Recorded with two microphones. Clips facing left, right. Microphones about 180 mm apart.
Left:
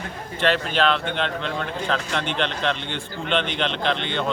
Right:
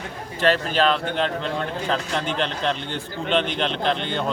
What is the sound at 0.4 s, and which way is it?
A man's voice, 40° right (ahead or behind).